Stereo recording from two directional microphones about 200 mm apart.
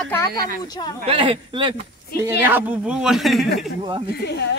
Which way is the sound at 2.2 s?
10° right (ahead or behind).